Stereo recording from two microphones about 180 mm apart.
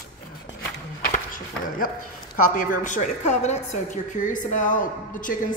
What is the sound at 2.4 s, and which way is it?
A woman's voice, 50° left (ahead or behind).